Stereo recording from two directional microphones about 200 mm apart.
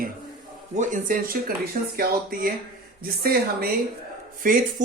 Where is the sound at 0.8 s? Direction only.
40° right (ahead or behind).